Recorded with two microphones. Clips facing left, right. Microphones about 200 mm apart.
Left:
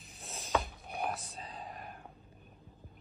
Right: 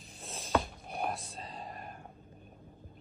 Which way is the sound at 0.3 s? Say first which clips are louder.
Right 2 dB; 35° right (ahead or behind).